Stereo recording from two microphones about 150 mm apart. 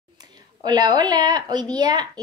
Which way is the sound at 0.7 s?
25° right (ahead or behind).